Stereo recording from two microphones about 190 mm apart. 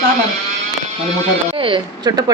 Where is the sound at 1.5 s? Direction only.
25° right (ahead or behind).